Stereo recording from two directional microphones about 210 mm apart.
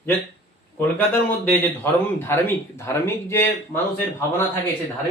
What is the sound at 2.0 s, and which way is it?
Speech, 10° left (ahead or behind).